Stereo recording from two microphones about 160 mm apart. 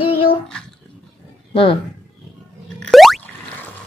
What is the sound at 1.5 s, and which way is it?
Speech, 35° left (ahead or behind).